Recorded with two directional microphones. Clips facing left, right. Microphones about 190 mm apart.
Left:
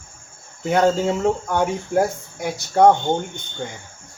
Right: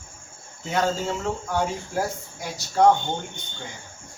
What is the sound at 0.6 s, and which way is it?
Speech, 60° left (ahead or behind).